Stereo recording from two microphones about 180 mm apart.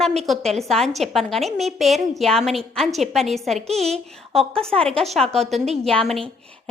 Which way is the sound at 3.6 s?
35° right (ahead or behind).